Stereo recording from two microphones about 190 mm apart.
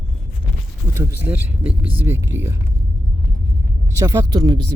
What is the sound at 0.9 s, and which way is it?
Speech, 10° right (ahead or behind).